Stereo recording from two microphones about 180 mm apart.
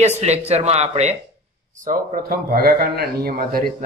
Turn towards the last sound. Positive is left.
turn(degrees=-55)  # may be behind; listen again after turning